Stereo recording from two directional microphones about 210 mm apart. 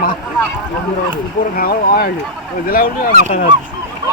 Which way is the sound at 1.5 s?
45° left (ahead or behind).